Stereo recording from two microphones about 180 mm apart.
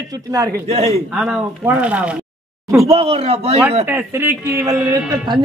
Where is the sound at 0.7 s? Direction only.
35° right (ahead or behind).